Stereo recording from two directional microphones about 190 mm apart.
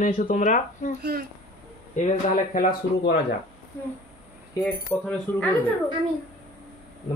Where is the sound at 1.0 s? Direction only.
55° right (ahead or behind).